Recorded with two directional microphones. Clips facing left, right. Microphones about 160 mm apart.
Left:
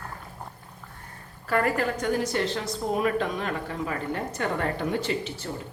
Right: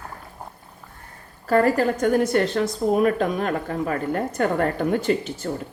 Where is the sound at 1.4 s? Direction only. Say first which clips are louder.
Right 6 dB; 35° right (ahead or behind).